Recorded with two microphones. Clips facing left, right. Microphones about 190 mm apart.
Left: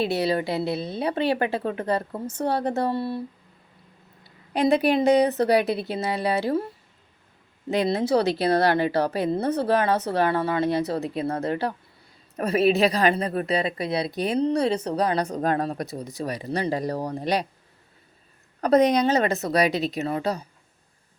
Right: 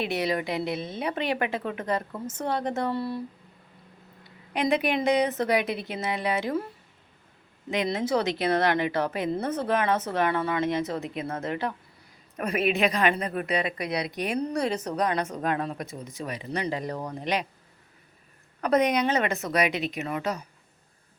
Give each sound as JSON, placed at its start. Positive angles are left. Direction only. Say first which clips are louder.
{"t": 0.0, "sound": "a woman's voice", "louder": "left 4 dB", "side_deg": 35}
{"t": 4.5, "sound": "a woman's voice", "louder": "left 5 dB", "side_deg": 35}
{"t": 7.7, "sound": "a woman's voice", "louder": "left 4 dB", "side_deg": 35}
{"t": 18.6, "sound": "a woman's voice", "louder": "left 4 dB", "side_deg": 35}